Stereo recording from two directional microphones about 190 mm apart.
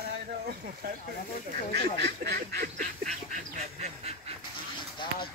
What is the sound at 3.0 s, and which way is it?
Goose, 35° right (ahead or behind).